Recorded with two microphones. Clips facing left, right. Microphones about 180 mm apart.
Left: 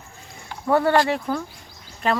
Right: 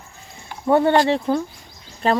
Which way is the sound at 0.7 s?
25° right (ahead or behind).